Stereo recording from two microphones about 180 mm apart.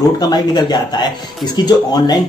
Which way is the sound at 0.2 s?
20° left (ahead or behind).